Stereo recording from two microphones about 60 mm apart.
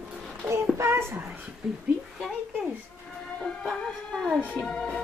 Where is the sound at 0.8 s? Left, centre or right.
Right.